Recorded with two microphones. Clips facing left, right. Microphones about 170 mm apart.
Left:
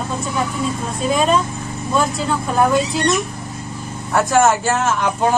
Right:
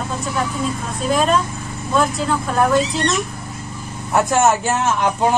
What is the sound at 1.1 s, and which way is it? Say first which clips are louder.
Speech: even; centre (ahead or behind).